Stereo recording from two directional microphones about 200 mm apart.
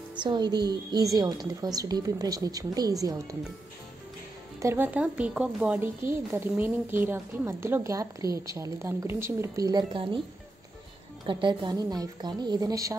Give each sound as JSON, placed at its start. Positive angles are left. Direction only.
{"t": 0.2, "sound": "a woman's voice", "side_deg": -20}
{"t": 4.6, "sound": "speech", "side_deg": -10}
{"t": 11.2, "sound": "a woman's voice", "side_deg": -20}